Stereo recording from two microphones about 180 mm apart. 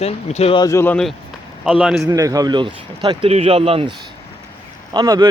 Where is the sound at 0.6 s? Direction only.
15° left (ahead or behind); by 2.0 s centre (ahead or behind).